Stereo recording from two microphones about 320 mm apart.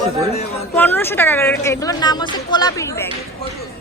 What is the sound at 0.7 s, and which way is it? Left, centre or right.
Speech, centre.